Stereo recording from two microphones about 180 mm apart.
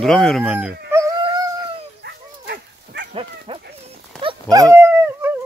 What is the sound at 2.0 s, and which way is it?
Dog, 70° right (ahead or behind).